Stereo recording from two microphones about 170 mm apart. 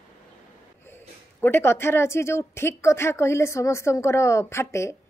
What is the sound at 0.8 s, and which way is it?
A woman's voice, 15° left (ahead or behind).